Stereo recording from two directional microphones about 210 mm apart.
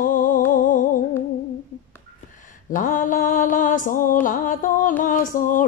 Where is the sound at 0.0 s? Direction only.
40° left (ahead or behind).